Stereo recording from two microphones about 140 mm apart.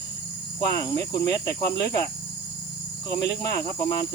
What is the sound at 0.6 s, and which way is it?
Cricket, 25° left (ahead or behind).